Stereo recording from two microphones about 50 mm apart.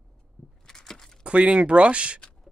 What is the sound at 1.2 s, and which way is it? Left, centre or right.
Speech, right.